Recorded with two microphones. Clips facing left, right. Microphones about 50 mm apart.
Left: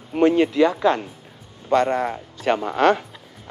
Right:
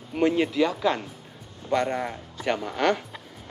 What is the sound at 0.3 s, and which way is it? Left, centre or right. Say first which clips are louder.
Speech: left 6 dB; centre.